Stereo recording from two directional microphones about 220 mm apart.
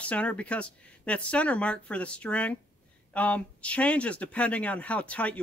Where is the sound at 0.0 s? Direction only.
5° left (ahead or behind).